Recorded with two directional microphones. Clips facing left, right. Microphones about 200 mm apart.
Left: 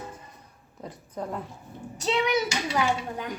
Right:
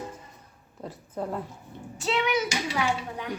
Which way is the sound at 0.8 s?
5° right (ahead or behind).